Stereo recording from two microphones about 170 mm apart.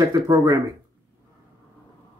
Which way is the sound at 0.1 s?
25° right (ahead or behind).